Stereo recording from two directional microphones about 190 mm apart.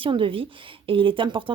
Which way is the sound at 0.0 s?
30° right (ahead or behind).